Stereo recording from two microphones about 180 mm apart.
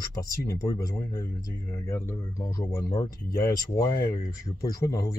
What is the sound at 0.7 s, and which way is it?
Speech, 20° left (ahead or behind).